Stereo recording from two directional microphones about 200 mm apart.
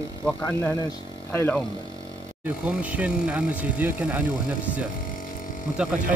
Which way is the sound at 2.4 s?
5° right (ahead or behind).